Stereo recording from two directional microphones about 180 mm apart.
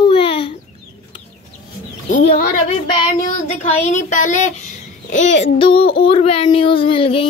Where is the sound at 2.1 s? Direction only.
45° left (ahead or behind).